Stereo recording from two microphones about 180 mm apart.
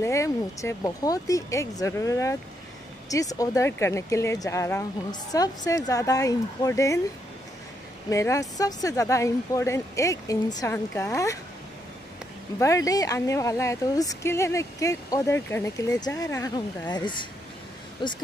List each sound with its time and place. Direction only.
0.0 s speech: 15° left (ahead or behind)
8.1 s speech: 15° left (ahead or behind)
12.5 s speech: 15° left (ahead or behind)